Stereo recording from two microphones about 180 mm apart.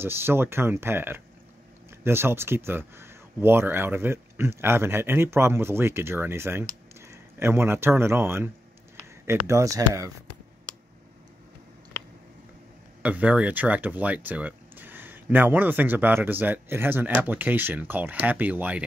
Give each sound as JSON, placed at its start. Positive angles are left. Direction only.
{"t": 0.0, "sound": "speech", "side_deg": -10}
{"t": 13.0, "sound": "speech", "side_deg": -10}